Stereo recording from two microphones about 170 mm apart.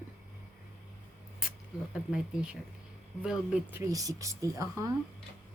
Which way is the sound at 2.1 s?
5° right (ahead or behind).